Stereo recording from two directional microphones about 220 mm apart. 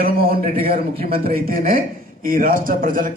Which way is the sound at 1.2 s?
40° right (ahead or behind).